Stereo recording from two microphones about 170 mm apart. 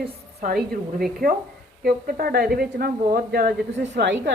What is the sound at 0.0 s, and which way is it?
A woman's voice, 60° right (ahead or behind).